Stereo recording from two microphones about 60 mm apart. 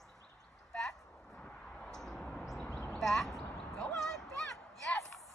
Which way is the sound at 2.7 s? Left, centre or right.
Centre.